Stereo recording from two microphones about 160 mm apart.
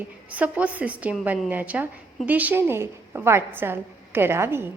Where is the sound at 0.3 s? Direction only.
10° right (ahead or behind).